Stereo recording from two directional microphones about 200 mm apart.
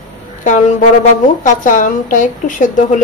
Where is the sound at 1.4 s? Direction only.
40° left (ahead or behind).